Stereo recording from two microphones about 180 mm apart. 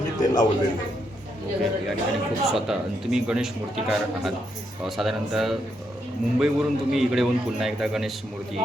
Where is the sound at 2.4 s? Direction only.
Centre (ahead or behind).